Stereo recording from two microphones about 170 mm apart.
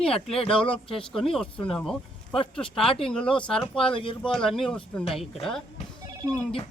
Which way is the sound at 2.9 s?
30° left (ahead or behind).